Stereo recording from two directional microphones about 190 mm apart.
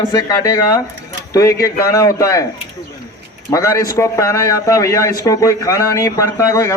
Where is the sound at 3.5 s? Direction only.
15° left (ahead or behind).